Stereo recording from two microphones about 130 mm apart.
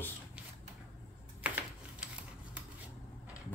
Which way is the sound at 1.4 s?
10° right (ahead or behind).